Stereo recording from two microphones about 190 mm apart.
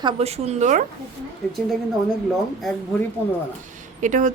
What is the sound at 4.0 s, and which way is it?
Speech, 40° right (ahead or behind).